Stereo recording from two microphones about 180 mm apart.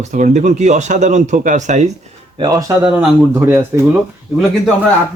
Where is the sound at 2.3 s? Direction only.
20° right (ahead or behind).